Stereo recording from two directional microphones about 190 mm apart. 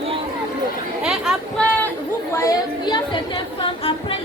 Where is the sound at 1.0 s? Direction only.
Centre (ahead or behind).